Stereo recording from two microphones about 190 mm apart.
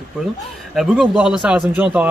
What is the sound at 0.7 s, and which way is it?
Speech, 5° right (ahead or behind).